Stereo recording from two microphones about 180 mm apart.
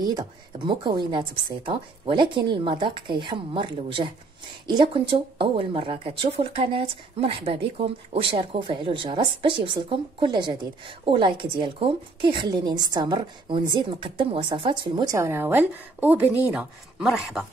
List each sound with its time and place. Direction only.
0.0 s speech: 25° right (ahead or behind)
15.1 s a woman's voice: 15° right (ahead or behind)